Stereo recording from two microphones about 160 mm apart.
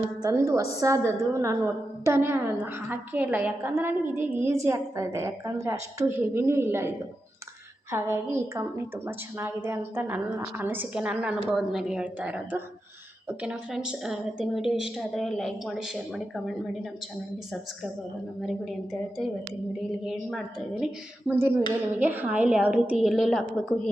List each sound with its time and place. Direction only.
0.2 s a woman's voice: 20° right (ahead or behind); by 16.8 s centre (ahead or behind)
18.4 s a woman's voice: centre (ahead or behind)
21.2 s a woman's voice: 15° right (ahead or behind)